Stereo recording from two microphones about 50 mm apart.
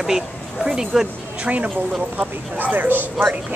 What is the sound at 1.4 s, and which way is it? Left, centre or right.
Speech, right.